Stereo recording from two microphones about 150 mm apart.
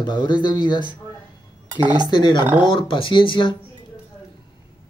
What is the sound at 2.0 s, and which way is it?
A man's voice, 30° left (ahead or behind).